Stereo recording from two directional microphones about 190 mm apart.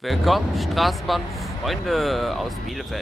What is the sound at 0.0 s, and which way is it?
Speech, centre (ahead or behind).